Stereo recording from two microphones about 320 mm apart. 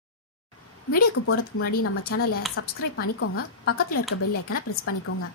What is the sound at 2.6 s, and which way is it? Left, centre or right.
Speech, left.